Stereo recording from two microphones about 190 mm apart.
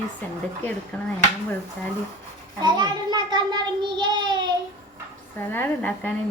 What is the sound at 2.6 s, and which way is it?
A child's voice, 20° right (ahead or behind).